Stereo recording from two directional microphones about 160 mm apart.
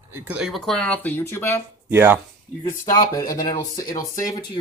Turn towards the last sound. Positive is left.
turn(degrees=20)  # may be behind; listen again after turning